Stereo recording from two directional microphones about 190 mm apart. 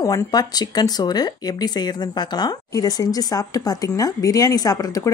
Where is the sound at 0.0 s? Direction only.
20° left (ahead or behind).